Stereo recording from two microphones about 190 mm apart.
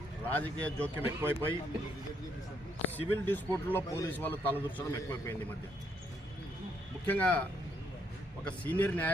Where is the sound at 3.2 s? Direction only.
10° left (ahead or behind).